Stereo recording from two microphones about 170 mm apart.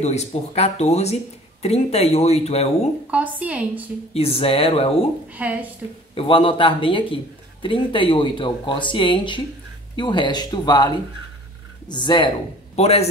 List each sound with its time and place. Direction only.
0.0 s speech: 40° left (ahead or behind)
3.1 s a woman's voice: 10° right (ahead or behind)
4.1 s speech: 35° left (ahead or behind)
5.3 s a woman's voice: 10° right (ahead or behind)
6.1 s speech: 30° left (ahead or behind)
11.9 s a man's voice: 25° left (ahead or behind)